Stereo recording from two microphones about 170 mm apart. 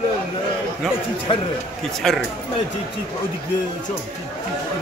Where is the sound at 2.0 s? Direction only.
Centre (ahead or behind).